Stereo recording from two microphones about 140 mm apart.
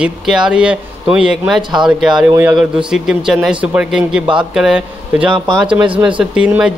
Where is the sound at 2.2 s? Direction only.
15° right (ahead or behind).